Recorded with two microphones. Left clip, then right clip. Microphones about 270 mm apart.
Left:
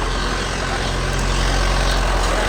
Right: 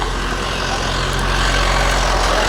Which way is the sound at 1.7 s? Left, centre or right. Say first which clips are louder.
Right 4 dB; right.